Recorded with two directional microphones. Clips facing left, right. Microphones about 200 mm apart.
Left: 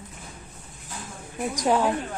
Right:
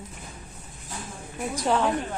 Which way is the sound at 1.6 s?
10° left (ahead or behind).